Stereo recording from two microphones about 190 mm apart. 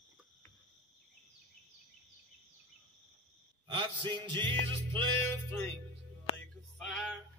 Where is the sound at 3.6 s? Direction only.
25° right (ahead or behind).